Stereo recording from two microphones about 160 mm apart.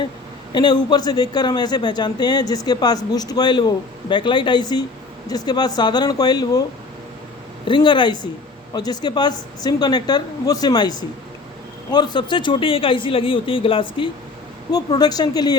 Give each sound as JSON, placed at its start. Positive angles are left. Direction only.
{"t": 0.5, "sound": "a man's voice", "side_deg": 30}
{"t": 7.7, "sound": "a man's voice", "side_deg": 30}